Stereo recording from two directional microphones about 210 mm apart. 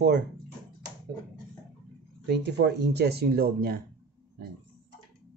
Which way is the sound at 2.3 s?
55° right (ahead or behind).